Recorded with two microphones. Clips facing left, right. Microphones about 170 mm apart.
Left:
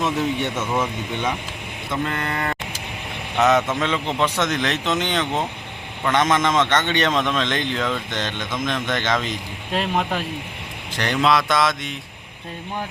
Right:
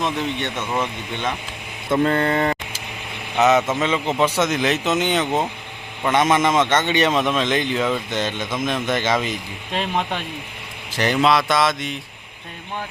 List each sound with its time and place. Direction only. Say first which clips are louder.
0.0 s speech: left 2 dB; 5° left (ahead or behind)
2.0 s speech: right 7 dB; 30° right (ahead or behind)
3.3 s a man's voice: right 1 dB; 5° right (ahead or behind)